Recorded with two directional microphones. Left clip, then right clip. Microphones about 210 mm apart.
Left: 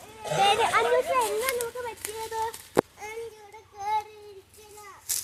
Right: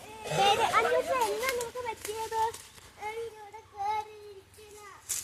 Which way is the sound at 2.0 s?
45° left (ahead or behind).